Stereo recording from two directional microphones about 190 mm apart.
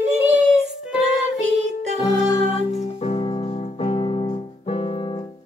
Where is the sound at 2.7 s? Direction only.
35° left (ahead or behind).